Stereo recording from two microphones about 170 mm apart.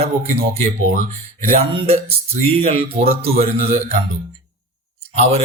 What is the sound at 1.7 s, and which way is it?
Speech, 30° right (ahead or behind).